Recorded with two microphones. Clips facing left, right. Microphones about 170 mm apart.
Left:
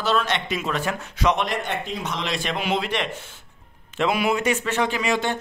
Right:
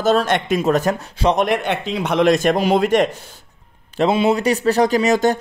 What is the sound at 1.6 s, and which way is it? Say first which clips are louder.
Speech: right 7 dB; 75° right (ahead or behind).